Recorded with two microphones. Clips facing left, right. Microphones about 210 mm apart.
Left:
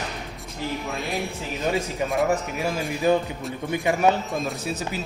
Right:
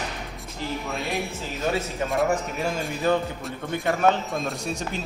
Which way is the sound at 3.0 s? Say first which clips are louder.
Left 2 dB; 15° left (ahead or behind).